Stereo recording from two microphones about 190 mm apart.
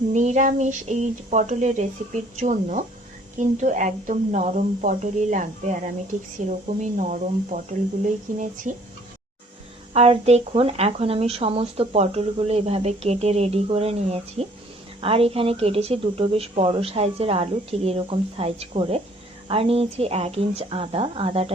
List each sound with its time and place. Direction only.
0.1 s speech: 40° right (ahead or behind)
9.9 s speech: 30° right (ahead or behind)